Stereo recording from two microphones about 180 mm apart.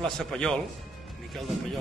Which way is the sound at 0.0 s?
5° left (ahead or behind).